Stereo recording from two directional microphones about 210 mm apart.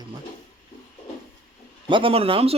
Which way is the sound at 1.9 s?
25° right (ahead or behind).